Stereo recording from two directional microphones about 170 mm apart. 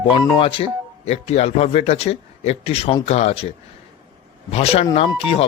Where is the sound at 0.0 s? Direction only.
30° left (ahead or behind).